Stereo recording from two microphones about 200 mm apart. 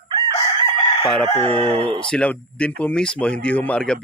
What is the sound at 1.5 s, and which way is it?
Speech, 30° right (ahead or behind).